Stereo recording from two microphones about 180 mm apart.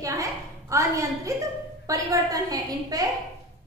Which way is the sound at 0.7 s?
15° right (ahead or behind).